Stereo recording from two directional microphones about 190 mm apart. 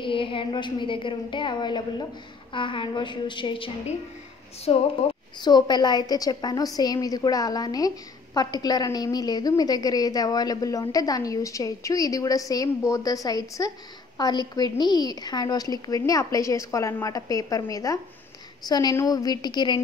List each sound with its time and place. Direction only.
0.0 s a woman's voice: 25° left (ahead or behind)